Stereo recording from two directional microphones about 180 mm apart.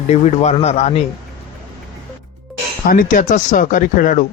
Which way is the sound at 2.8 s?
50° left (ahead or behind).